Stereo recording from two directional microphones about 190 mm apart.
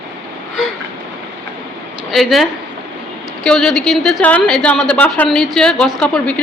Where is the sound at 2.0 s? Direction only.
Centre (ahead or behind).